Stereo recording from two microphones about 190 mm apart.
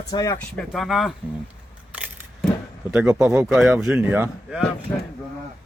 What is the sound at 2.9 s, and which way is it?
Speech, 5° right (ahead or behind).